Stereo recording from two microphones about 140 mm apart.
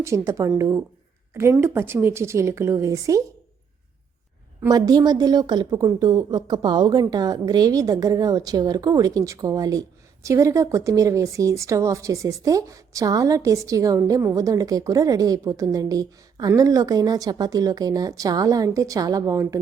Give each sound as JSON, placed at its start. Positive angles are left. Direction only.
{"t": 0.0, "sound": "a woman's voice", "side_deg": -20}
{"t": 4.7, "sound": "a woman's voice", "side_deg": -30}